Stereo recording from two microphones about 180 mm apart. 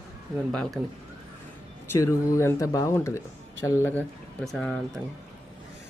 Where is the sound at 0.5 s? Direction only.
5° left (ahead or behind).